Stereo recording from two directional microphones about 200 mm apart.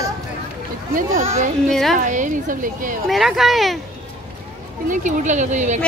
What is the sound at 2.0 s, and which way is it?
A woman's voice, 40° right (ahead or behind).